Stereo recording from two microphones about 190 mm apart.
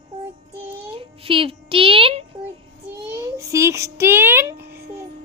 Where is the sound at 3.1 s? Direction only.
15° right (ahead or behind).